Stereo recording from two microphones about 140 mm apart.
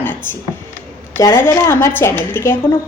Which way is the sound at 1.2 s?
20° left (ahead or behind).